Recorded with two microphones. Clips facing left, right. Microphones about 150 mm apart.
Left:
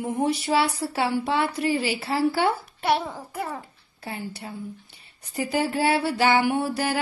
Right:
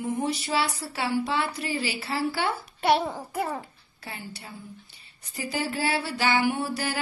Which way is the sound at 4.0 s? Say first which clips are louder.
Left 6 dB; 45° left (ahead or behind).